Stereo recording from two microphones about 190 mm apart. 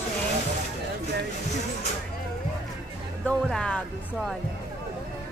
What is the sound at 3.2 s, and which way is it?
Speech, 5° left (ahead or behind).